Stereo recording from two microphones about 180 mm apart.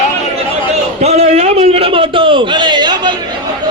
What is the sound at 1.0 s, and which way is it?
A man's voice, 35° right (ahead or behind).